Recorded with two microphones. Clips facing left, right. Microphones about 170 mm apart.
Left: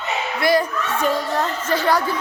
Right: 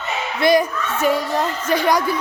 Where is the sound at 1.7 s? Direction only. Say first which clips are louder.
Right 2 dB; 15° right (ahead or behind).